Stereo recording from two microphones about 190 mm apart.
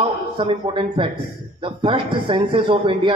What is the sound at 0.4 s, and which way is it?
A man's voice, 25° right (ahead or behind).